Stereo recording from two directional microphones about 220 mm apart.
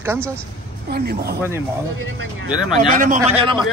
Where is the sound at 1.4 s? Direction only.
10° right (ahead or behind).